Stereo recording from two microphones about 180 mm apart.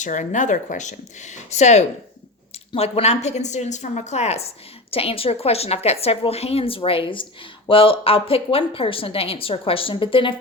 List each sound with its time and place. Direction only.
0.0 s a woman's voice: 45° left (ahead or behind)